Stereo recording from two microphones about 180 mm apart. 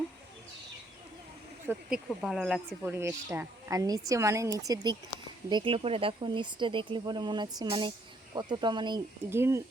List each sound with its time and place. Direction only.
1.6 s speech: 10° right (ahead or behind)
2.9 s a woman's voice: 15° right (ahead or behind)
9.3 s a woman's voice: 15° right (ahead or behind)